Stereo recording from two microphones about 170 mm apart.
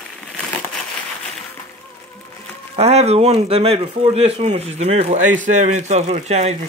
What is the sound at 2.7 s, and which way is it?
A man's voice, 40° right (ahead or behind).